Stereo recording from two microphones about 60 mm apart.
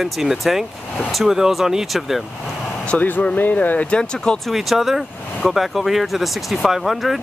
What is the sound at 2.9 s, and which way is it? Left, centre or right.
Speech, left.